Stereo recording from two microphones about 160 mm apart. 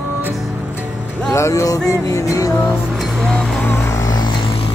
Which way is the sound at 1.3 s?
20° left (ahead or behind).